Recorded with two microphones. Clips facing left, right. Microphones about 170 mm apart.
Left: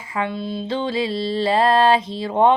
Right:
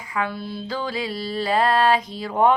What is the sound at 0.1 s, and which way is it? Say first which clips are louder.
Music: left 3 dB; 25° left (ahead or behind).